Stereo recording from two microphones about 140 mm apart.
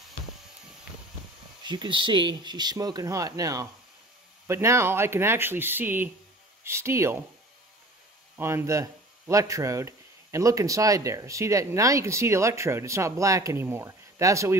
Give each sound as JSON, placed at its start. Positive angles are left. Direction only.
{"t": 1.6, "sound": "a man's voice", "side_deg": -30}
{"t": 8.4, "sound": "a man's voice", "side_deg": -15}